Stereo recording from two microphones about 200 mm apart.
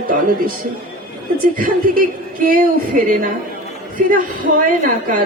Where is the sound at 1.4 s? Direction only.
45° right (ahead or behind).